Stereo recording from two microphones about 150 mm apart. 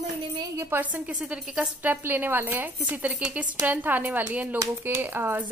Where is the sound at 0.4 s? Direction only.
15° right (ahead or behind).